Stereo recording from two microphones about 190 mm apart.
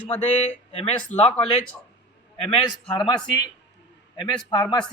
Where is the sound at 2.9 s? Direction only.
25° left (ahead or behind).